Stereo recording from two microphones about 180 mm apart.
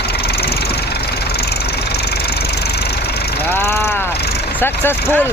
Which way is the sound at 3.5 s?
15° left (ahead or behind).